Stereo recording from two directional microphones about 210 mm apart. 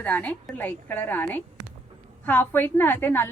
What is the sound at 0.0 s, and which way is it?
A woman's voice, 5° left (ahead or behind).